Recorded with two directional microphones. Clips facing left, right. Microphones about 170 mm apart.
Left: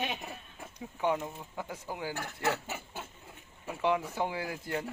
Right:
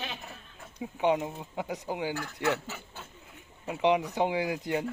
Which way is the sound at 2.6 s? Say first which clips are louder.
Left 2 dB; 15° left (ahead or behind).